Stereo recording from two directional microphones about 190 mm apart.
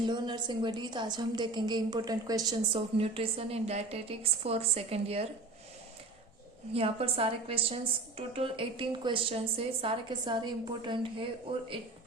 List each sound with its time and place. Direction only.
0.0 s a woman's voice: 25° right (ahead or behind)
6.7 s a woman's voice: 30° right (ahead or behind)